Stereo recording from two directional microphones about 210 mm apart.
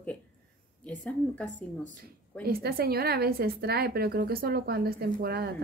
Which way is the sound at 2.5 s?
45° right (ahead or behind).